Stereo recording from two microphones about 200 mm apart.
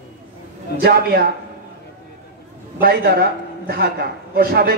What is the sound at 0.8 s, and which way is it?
Speech, 50° right (ahead or behind).